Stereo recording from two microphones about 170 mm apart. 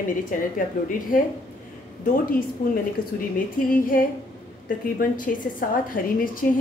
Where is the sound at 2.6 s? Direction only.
60° left (ahead or behind).